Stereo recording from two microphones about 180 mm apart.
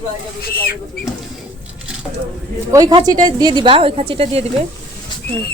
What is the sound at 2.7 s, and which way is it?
A woman's voice, 20° right (ahead or behind).